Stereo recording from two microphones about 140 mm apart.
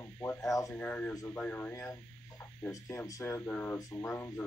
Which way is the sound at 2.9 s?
20° left (ahead or behind).